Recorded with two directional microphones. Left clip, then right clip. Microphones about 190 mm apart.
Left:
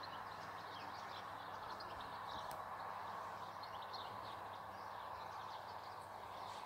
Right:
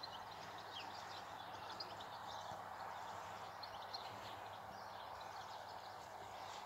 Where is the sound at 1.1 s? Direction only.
20° left (ahead or behind).